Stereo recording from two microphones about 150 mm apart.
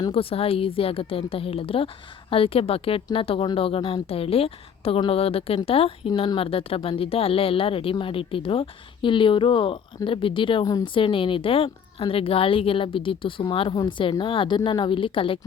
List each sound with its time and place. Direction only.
0.1 s a woman's voice: 40° left (ahead or behind)